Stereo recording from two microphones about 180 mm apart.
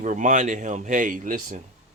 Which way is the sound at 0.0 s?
45° right (ahead or behind).